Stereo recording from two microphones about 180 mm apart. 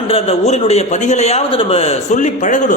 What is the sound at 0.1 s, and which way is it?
A man's voice, 35° left (ahead or behind).